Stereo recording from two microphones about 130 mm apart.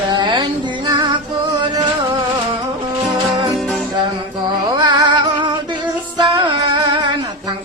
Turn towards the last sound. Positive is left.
turn(degrees=-35)  # may be behind; listen again after turning